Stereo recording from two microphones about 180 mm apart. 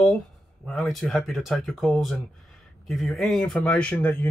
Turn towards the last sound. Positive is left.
turn(degrees=10)  # may be behind; listen again after turning